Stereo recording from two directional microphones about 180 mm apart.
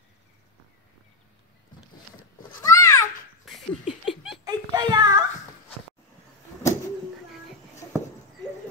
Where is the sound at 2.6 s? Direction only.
20° left (ahead or behind).